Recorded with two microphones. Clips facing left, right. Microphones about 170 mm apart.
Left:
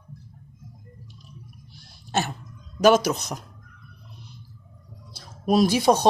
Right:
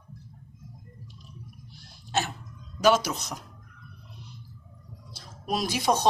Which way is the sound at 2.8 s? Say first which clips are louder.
Left 5 dB; 50° left (ahead or behind).